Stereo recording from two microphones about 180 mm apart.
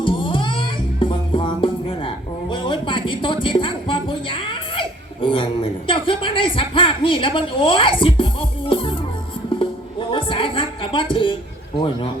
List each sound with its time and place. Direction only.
0.0 s music: 30° left (ahead or behind)
5.9 s a woman's voice: 30° left (ahead or behind)
9.6 s a sound: 30° left (ahead or behind)